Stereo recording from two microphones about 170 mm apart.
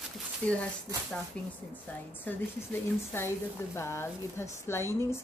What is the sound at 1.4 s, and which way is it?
Speech, 5° left (ahead or behind).